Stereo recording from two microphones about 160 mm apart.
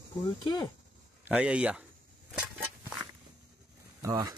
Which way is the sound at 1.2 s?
5° right (ahead or behind).